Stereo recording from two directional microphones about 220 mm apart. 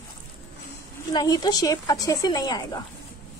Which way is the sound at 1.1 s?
15° left (ahead or behind).